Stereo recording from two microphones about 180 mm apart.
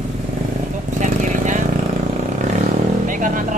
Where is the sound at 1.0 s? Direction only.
45° right (ahead or behind).